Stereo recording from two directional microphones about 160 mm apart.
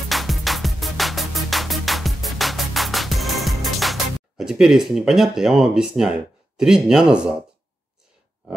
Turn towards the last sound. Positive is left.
turn(degrees=-5)  # may be behind; listen again after turning